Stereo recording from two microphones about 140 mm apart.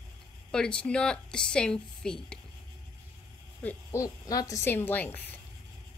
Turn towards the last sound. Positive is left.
turn(degrees=15)  # may be behind; listen again after turning